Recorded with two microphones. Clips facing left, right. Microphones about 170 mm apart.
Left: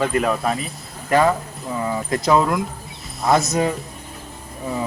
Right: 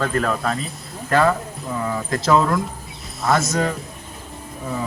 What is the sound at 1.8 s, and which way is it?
Speech, 15° left (ahead or behind).